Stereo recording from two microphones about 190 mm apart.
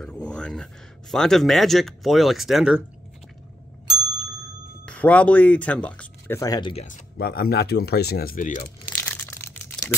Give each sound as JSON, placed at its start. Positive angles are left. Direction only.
{"t": 0.0, "sound": "a sound", "side_deg": 5}
{"t": 1.1, "sound": "speech", "side_deg": 0}
{"t": 4.8, "sound": "speech", "side_deg": 5}
{"t": 6.7, "sound": "speech", "side_deg": 35}
{"t": 7.2, "sound": "speech", "side_deg": 55}
{"t": 8.8, "sound": "a sound", "side_deg": 10}